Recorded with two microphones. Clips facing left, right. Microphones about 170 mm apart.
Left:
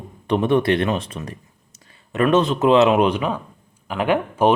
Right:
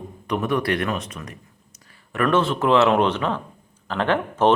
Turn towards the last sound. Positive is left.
turn(degrees=10)  # may be behind; listen again after turning